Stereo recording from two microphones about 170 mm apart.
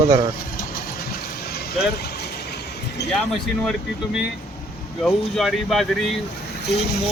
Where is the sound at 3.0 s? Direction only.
80° left.